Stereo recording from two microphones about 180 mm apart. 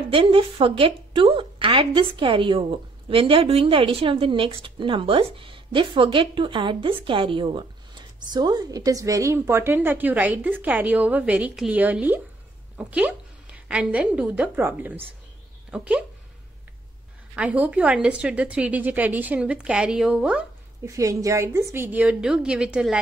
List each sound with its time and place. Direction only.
0.1 s a woman's voice: 30° right (ahead or behind); by 16.0 s 5° right (ahead or behind)
17.4 s a woman's voice: 5° right (ahead or behind)
20.9 s a woman's voice: 20° right (ahead or behind)